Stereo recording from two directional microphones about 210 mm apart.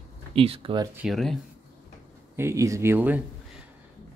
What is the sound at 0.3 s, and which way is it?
Speech, 25° right (ahead or behind).